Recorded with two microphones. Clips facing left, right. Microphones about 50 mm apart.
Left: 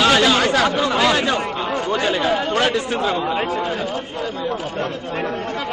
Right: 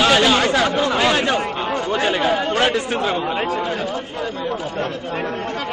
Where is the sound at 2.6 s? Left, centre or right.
Centre.